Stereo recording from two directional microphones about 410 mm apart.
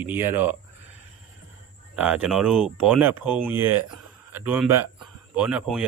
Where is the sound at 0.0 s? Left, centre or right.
Centre.